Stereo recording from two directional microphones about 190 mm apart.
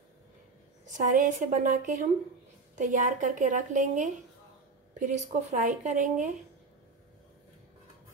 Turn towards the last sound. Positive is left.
turn(degrees=-40)  # may be behind; listen again after turning